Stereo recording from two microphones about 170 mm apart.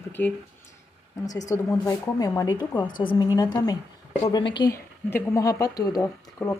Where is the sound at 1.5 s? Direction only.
20° left (ahead or behind).